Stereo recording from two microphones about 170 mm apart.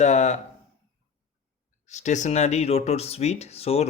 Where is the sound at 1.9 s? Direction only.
45° left (ahead or behind).